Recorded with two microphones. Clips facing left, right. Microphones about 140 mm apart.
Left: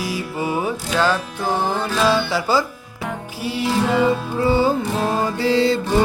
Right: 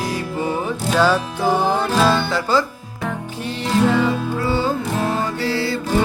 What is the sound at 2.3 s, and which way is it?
Music, 5° left (ahead or behind).